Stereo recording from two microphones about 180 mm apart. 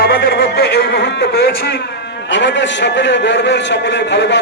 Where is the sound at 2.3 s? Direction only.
80° left.